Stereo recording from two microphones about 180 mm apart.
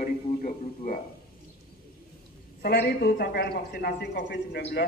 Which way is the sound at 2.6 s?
60° left (ahead or behind).